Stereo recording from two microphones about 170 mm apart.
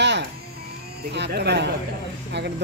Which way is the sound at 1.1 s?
80° right.